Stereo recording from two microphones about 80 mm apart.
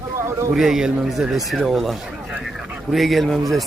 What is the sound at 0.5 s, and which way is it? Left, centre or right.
Speech, centre.